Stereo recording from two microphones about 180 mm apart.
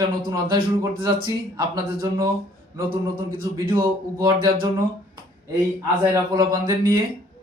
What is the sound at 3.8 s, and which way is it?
Speech, 20° right (ahead or behind).